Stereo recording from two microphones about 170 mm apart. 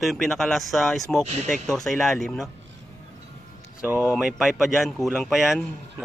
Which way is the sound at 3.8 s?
10° right (ahead or behind).